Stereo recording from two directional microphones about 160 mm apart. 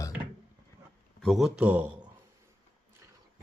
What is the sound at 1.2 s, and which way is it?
Speech, centre (ahead or behind).